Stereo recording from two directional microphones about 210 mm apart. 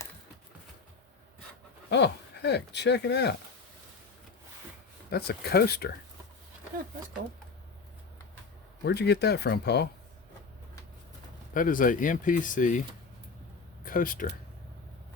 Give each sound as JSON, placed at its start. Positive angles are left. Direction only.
{"t": 1.9, "sound": "speech", "side_deg": 55}
{"t": 5.1, "sound": "speech", "side_deg": 50}
{"t": 8.8, "sound": "speech", "side_deg": 50}
{"t": 11.5, "sound": "speech", "side_deg": 40}
{"t": 13.8, "sound": "speech", "side_deg": 40}